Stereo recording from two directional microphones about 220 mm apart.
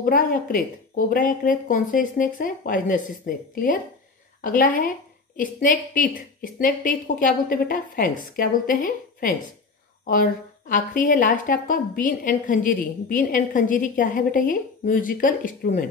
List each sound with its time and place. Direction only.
0.0 s a woman's voice: 40° left (ahead or behind)